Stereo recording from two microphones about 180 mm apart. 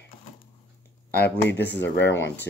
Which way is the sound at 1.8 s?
85° left.